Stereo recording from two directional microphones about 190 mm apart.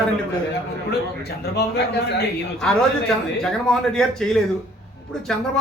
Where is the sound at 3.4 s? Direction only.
5° left (ahead or behind).